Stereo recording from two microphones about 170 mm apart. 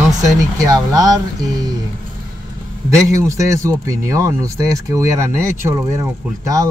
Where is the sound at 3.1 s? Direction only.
15° right (ahead or behind).